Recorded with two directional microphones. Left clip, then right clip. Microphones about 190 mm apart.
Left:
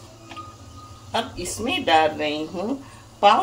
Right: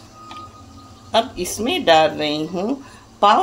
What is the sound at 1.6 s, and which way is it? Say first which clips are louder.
Speech: right 4 dB; 45° right (ahead or behind).